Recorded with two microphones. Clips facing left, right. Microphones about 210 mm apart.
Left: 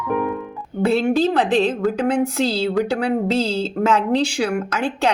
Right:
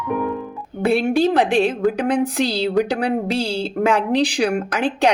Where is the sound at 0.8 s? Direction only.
15° right (ahead or behind).